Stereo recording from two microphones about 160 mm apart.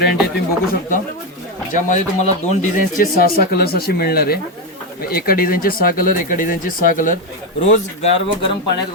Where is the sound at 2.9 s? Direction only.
70° left (ahead or behind).